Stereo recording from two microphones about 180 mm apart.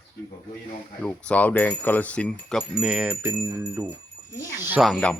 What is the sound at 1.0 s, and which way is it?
Speech, 5° left (ahead or behind).